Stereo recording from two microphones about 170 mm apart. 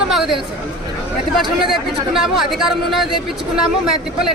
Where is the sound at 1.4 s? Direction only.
Centre (ahead or behind).